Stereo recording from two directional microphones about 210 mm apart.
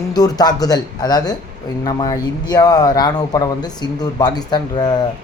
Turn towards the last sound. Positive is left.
turn(degrees=20)  # may be behind; listen again after turning